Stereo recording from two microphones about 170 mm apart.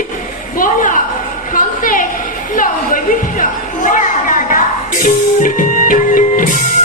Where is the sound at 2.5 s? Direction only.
55° left (ahead or behind).